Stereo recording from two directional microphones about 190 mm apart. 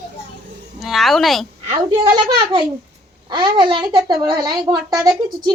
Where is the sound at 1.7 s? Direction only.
25° right (ahead or behind).